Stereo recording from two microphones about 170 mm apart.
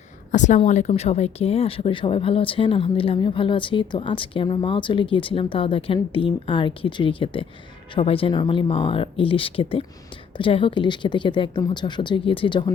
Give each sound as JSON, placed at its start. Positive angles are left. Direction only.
{"t": 0.3, "sound": "speech", "side_deg": 45}